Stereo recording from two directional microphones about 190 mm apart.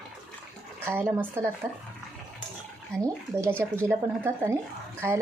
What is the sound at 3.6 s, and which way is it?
A woman's voice, 10° right (ahead or behind).